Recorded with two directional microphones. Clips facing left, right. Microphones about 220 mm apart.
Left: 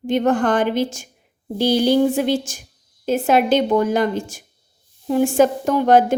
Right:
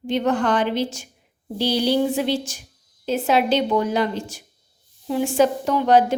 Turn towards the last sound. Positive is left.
turn(degrees=50)  # may be behind; listen again after turning